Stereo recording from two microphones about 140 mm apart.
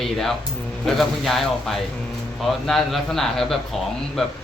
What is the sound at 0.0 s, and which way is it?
A man's voice, centre (ahead or behind).